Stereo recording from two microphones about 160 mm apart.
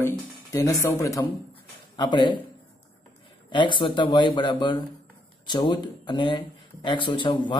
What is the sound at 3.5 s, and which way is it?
Speech, 30° left (ahead or behind).